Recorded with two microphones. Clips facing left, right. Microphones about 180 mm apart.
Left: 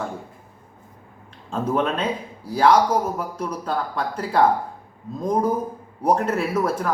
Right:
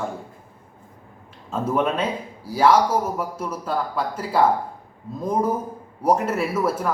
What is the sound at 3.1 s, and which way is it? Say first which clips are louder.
Speech: even; 5° right (ahead or behind).